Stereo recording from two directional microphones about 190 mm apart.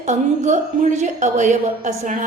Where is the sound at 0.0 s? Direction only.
40° right (ahead or behind).